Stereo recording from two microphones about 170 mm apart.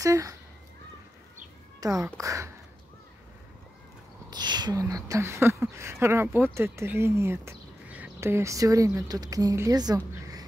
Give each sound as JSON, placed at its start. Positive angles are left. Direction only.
{"t": 0.0, "sound": "speech", "side_deg": -20}
{"t": 1.8, "sound": "speech", "side_deg": -20}
{"t": 4.3, "sound": "speech", "side_deg": -25}